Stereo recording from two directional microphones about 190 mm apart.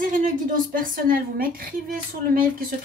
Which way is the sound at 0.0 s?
45° right (ahead or behind).